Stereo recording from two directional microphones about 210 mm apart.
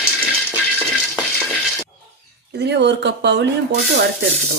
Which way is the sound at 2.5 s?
55° right (ahead or behind).